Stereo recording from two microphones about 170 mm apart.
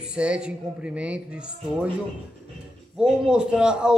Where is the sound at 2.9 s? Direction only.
5° right (ahead or behind).